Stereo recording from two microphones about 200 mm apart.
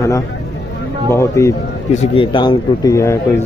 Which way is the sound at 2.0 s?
25° left (ahead or behind).